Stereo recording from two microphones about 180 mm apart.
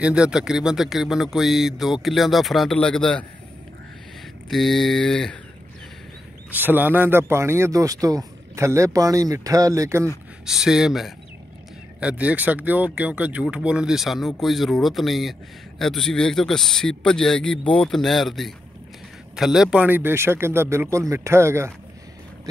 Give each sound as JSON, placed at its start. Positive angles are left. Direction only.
{"t": 0.0, "sound": "a man's voice", "side_deg": -5}
{"t": 4.5, "sound": "a man's voice", "side_deg": 0}
{"t": 6.5, "sound": "speech", "side_deg": -10}
{"t": 10.4, "sound": "a man's voice", "side_deg": -5}